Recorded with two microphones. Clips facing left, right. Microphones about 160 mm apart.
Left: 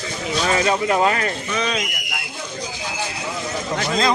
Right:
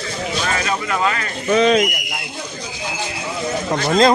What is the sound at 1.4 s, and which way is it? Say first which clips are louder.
Speech: right 10 dB; 45° right (ahead or behind).